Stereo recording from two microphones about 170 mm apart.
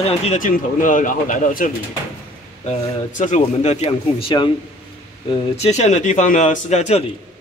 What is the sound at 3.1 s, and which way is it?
Speech, 45° left (ahead or behind).